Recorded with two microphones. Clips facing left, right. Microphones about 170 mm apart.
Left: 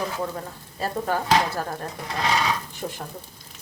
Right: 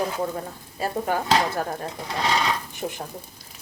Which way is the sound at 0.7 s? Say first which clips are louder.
Right 1 dB; 15° right (ahead or behind).